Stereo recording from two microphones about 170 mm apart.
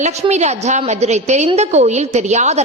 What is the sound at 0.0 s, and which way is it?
A woman's voice, 40° right (ahead or behind).